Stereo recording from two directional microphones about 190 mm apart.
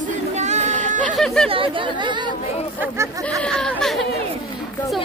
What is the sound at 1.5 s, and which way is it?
Speech, 25° right (ahead or behind).